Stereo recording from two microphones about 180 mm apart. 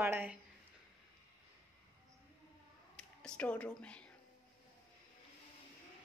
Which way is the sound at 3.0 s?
5° left (ahead or behind).